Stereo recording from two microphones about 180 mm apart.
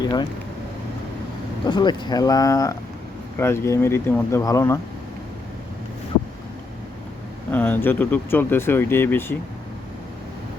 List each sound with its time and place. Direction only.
0.0 s speech: 20° left (ahead or behind)
1.6 s speech: 25° left (ahead or behind)
7.5 s speech: 10° left (ahead or behind)